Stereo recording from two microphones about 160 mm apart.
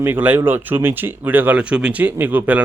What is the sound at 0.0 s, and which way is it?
Speech, 10° right (ahead or behind).